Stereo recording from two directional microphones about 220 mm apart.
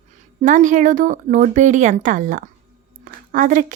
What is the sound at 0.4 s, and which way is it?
A woman's voice, 35° right (ahead or behind).